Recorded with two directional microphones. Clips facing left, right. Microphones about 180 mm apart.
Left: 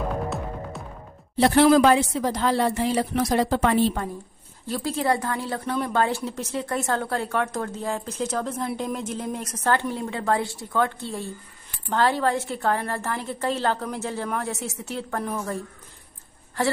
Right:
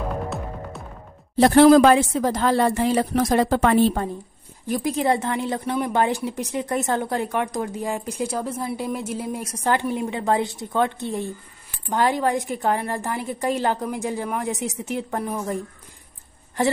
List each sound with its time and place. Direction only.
0.0 s music: centre (ahead or behind)
1.3 s speech: 45° right (ahead or behind)
4.6 s a woman's voice: 15° right (ahead or behind)